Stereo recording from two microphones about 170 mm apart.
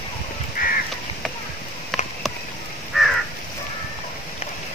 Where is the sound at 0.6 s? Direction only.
55° left (ahead or behind).